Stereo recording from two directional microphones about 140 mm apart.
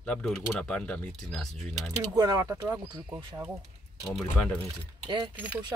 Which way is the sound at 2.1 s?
25° right (ahead or behind).